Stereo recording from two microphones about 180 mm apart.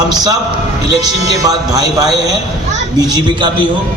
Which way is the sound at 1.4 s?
20° right (ahead or behind).